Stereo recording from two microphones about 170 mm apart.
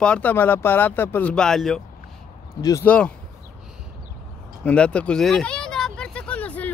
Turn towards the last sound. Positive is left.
turn(degrees=10)  # may be behind; listen again after turning